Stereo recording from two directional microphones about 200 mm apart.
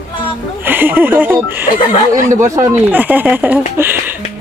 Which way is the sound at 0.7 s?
10° right (ahead or behind).